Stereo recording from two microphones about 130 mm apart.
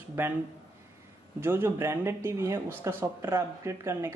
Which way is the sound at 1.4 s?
20° right (ahead or behind).